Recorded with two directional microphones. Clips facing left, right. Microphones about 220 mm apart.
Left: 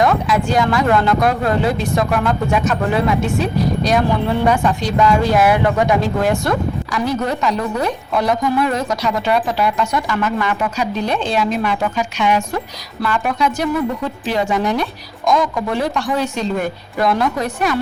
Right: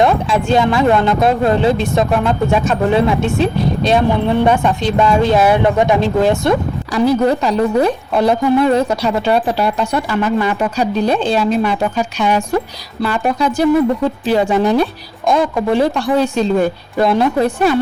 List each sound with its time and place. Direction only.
0.0 s a woman's voice: 25° right (ahead or behind)